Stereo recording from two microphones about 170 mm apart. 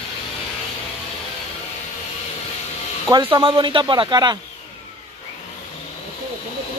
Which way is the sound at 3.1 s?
30° right (ahead or behind).